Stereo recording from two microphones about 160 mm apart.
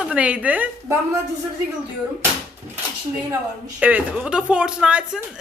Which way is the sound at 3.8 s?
10° right (ahead or behind).